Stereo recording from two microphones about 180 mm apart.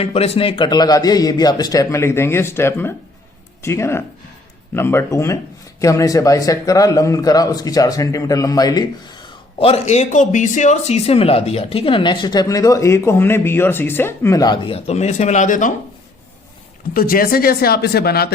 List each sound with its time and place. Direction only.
0.0 s a man's voice: 35° left (ahead or behind)
16.9 s speech: 55° left (ahead or behind)